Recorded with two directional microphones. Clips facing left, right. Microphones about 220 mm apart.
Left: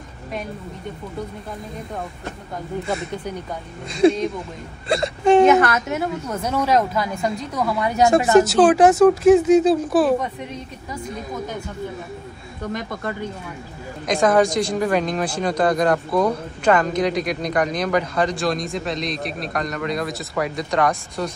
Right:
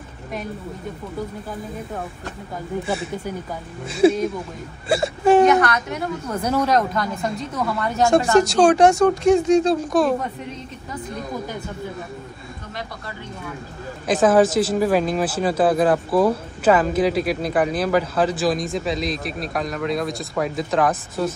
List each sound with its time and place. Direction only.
2.9 s speech: 5° right (ahead or behind)
12.7 s speech: 50° left (ahead or behind)
14.0 s speech: 5° right (ahead or behind)